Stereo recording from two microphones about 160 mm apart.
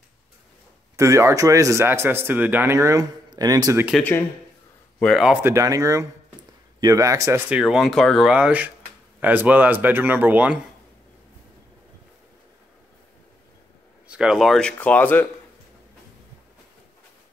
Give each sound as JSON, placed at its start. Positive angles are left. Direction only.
{"t": 0.9, "sound": "speech", "side_deg": -20}
{"t": 5.0, "sound": "speech", "side_deg": 0}
{"t": 5.4, "sound": "speech", "side_deg": -20}
{"t": 14.0, "sound": "speech", "side_deg": -5}